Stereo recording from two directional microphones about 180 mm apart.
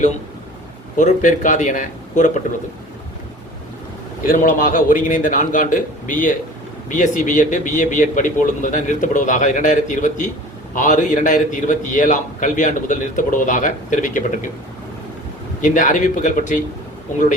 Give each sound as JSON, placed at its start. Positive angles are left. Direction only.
{"t": 0.9, "sound": "a man's voice", "side_deg": 45}
{"t": 4.3, "sound": "a man's voice", "side_deg": 50}
{"t": 15.6, "sound": "a man's voice", "side_deg": 45}